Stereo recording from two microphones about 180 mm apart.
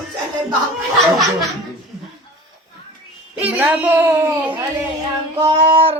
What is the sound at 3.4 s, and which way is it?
Speech, 10° right (ahead or behind).